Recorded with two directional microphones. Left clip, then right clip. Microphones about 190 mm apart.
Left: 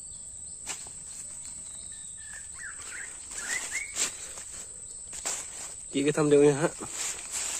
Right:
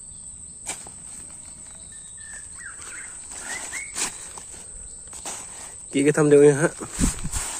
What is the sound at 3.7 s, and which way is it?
Dog, 60° right (ahead or behind).